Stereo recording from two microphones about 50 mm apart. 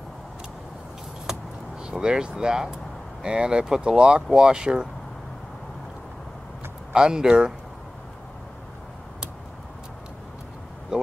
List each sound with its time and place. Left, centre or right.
1.2 s keys jangling: centre
3.2 s speech: centre
6.9 s speech: centre
10.9 s speech: centre